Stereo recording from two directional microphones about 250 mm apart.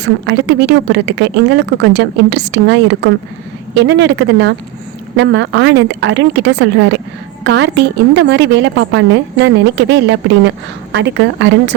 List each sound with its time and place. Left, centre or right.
0.0 s a woman's voice: right